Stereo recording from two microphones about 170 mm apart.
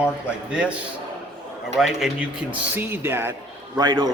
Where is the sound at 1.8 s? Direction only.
Centre (ahead or behind).